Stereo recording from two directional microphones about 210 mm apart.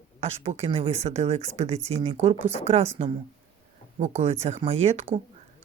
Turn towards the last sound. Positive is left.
turn(degrees=-30)  # may be behind; listen again after turning